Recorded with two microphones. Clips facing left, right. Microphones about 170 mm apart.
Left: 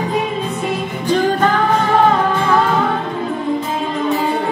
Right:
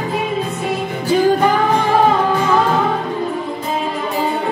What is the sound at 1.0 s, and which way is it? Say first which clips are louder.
Music: right 2 dB; 10° right (ahead or behind).